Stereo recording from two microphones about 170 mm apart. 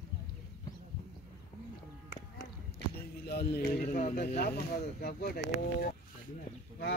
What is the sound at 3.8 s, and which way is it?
Speech, 45° left (ahead or behind).